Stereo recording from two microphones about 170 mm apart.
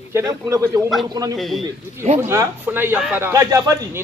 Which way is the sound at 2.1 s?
15° right (ahead or behind).